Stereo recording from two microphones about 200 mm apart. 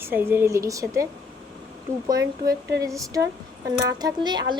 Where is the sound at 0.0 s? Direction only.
10° right (ahead or behind).